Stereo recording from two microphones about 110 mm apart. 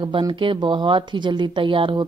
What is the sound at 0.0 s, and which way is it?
Speech, 45° right (ahead or behind).